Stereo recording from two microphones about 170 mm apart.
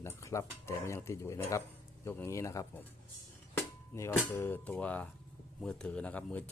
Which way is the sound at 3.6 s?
15° left (ahead or behind).